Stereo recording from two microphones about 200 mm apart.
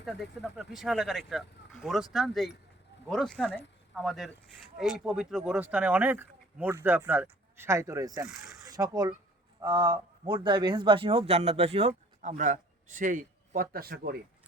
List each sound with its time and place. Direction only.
0.0 s speech: centre (ahead or behind); by 8.3 s 15° right (ahead or behind)
8.4 s zipper: 15° right (ahead or behind)
9.6 s speech: 20° right (ahead or behind); by 14.2 s 50° right (ahead or behind)